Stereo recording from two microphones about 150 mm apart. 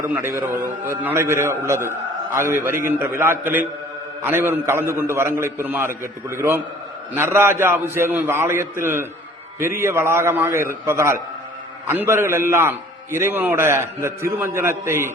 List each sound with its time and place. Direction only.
0.1 s a man's voice: 15° right (ahead or behind)